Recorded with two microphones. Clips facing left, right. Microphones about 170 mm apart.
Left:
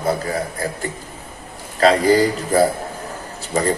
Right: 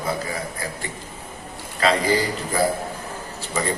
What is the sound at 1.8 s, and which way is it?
A man's voice, 40° left (ahead or behind).